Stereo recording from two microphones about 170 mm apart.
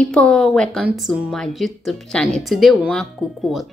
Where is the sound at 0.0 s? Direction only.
5° left (ahead or behind).